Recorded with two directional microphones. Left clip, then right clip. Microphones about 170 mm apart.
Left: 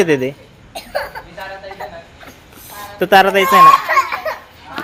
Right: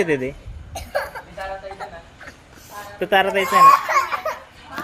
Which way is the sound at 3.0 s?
35° left (ahead or behind).